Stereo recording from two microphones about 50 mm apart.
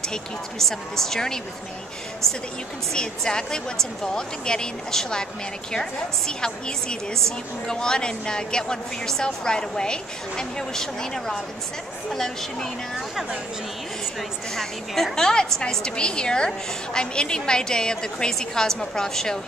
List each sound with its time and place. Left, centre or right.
0.1 s a woman's voice: centre
2.9 s a woman's voice: centre
14.5 s a woman's voice: centre